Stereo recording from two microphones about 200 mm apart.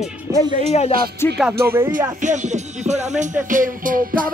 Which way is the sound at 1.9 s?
40° right (ahead or behind).